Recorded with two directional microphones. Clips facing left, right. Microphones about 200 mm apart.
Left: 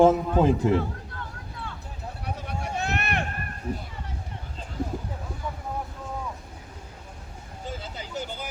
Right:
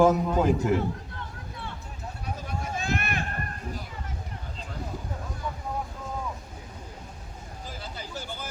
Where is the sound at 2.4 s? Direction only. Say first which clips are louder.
Left 3 dB; 65° left (ahead or behind).